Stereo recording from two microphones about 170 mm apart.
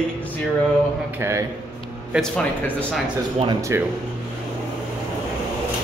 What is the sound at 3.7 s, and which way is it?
Speech, 15° right (ahead or behind).